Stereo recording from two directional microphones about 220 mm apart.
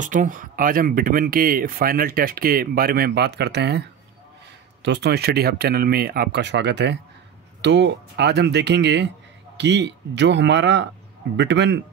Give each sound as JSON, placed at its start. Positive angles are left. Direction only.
{"t": 0.0, "sound": "speech", "side_deg": -35}
{"t": 4.8, "sound": "speech", "side_deg": -50}